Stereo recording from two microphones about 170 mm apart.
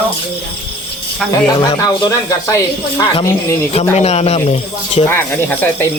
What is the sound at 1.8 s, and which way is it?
Speech, 20° left (ahead or behind).